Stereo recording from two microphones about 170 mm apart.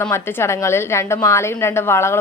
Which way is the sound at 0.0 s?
15° left (ahead or behind).